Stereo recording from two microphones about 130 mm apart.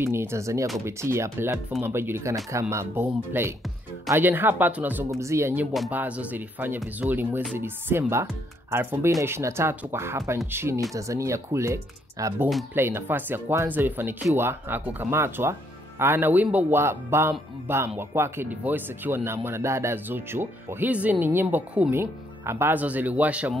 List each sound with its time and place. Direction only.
0.0 s speech: 20° right (ahead or behind)